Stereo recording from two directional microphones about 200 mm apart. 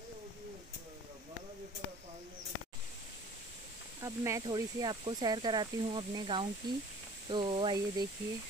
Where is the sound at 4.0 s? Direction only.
15° right (ahead or behind).